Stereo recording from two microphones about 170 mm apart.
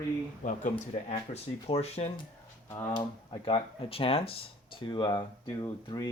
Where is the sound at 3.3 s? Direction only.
30° left (ahead or behind).